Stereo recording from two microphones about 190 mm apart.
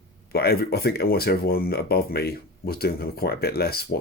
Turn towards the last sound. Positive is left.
turn(degrees=55)  # may be behind; listen again after turning